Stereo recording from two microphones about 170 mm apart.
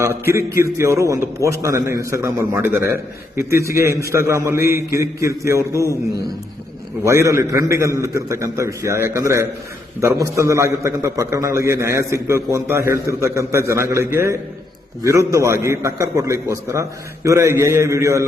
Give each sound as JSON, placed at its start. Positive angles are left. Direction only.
{"t": 0.8, "sound": "a man's voice", "side_deg": -20}
{"t": 7.0, "sound": "a man's voice", "side_deg": -15}